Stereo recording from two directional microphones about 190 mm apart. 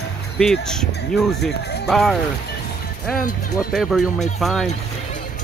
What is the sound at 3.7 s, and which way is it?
Speech, centre (ahead or behind).